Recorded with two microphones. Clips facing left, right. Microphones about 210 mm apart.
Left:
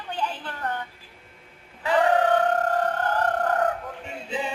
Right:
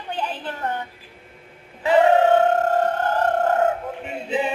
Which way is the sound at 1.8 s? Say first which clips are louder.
Right 5 dB; 25° right (ahead or behind).